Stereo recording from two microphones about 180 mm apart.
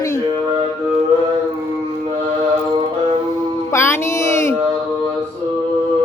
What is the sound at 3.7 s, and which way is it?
Music, 15° left (ahead or behind).